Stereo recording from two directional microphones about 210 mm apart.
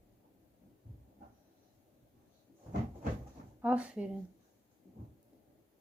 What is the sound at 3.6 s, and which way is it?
Speech, 5° right (ahead or behind).